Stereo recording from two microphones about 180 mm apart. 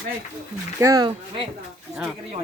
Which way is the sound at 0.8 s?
20° right (ahead or behind).